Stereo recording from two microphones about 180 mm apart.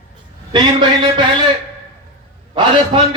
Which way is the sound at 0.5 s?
25° right (ahead or behind).